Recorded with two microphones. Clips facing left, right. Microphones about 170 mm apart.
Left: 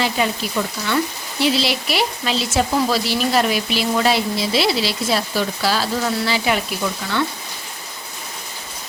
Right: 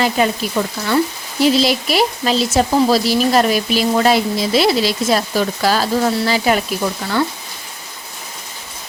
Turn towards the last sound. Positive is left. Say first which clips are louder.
# right 4 dB
turn(degrees=-40)  # may be behind; listen again after turning